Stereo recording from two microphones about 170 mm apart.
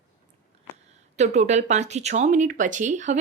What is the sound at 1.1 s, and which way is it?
Speech, 40° right (ahead or behind).